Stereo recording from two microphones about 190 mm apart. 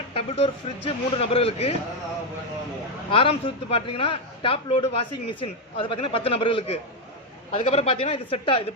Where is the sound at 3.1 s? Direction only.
30° left (ahead or behind).